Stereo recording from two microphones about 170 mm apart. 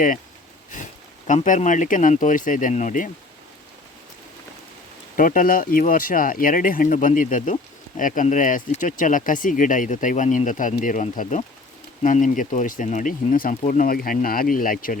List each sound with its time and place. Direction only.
0.7 s speech: 50° left (ahead or behind)
5.1 s speech: 50° left (ahead or behind)